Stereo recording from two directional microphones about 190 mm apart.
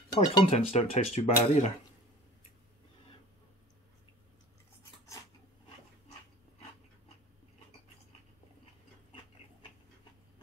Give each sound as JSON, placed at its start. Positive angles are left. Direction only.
{"t": 0.1, "sound": "speech", "side_deg": 30}